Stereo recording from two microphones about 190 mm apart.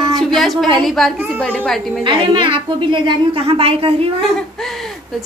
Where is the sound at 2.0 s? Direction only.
25° right (ahead or behind).